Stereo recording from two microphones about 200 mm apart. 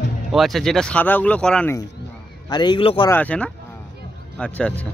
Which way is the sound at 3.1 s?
5° left (ahead or behind).